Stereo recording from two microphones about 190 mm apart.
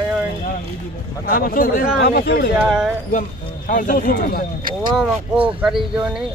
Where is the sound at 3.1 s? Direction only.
45° left (ahead or behind).